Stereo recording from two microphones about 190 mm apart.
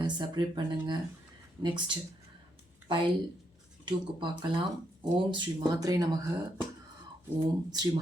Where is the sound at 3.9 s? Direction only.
25° right (ahead or behind).